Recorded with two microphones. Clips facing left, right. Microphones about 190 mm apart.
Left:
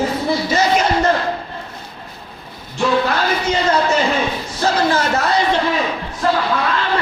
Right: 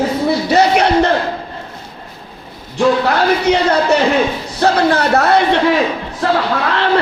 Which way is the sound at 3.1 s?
65° right (ahead or behind).